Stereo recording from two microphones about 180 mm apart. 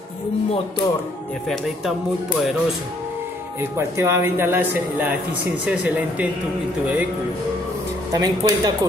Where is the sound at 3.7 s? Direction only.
15° right (ahead or behind).